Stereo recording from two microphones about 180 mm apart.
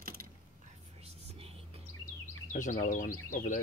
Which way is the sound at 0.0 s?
55° right (ahead or behind).